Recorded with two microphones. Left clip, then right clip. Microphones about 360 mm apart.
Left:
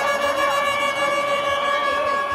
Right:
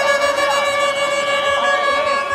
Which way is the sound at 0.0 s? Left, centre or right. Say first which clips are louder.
Right 4 dB; right.